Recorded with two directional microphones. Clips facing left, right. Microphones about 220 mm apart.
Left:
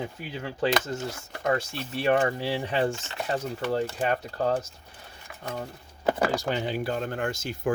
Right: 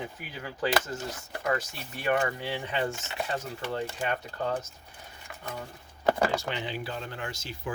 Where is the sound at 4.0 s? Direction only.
35° left (ahead or behind).